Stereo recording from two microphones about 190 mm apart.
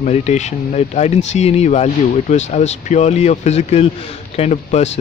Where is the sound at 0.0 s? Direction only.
35° left (ahead or behind).